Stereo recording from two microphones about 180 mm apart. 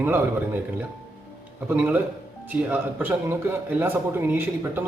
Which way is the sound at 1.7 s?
10° right (ahead or behind).